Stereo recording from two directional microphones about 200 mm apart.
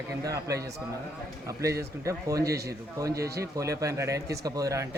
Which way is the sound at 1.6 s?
15° right (ahead or behind).